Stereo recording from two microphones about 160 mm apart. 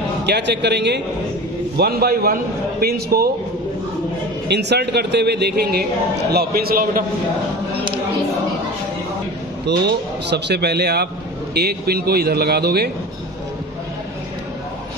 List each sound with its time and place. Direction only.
0.3 s speech: 90° right
1.8 s a man's voice: 75° right (ahead or behind)
4.5 s a man's voice: 90° right; by 7.1 s 60° right (ahead or behind)
9.7 s a man's voice: 90° right